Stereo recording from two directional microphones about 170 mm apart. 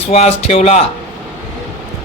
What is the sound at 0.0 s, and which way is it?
Speech, 35° left (ahead or behind).